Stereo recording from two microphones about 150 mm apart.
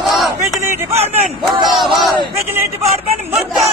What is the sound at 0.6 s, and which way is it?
Speech, 20° right (ahead or behind).